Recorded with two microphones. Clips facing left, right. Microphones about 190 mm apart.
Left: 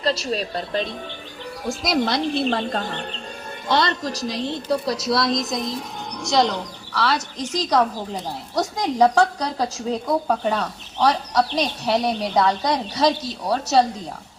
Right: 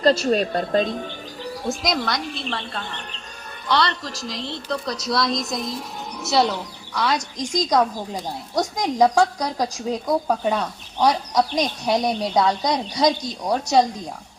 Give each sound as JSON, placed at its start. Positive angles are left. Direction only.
{"t": 0.0, "sound": "a woman's voice", "side_deg": -50}
{"t": 2.0, "sound": "speech", "side_deg": 30}
{"t": 4.1, "sound": "a woman's voice", "side_deg": 15}
{"t": 4.9, "sound": "a woman's voice", "side_deg": 5}